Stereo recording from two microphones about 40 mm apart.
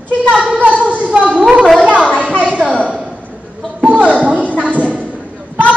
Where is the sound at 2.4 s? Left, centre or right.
Right.